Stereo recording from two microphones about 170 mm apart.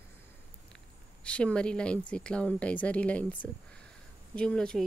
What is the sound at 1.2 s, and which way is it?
Speech, 5° left (ahead or behind).